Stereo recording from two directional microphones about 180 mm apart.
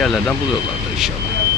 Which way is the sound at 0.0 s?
Centre (ahead or behind).